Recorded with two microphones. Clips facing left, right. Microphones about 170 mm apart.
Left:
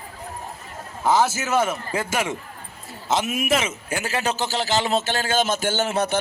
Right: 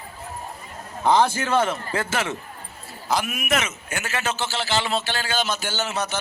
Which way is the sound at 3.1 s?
25° left (ahead or behind).